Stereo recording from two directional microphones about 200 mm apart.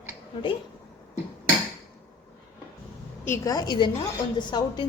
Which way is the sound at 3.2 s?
15° left (ahead or behind).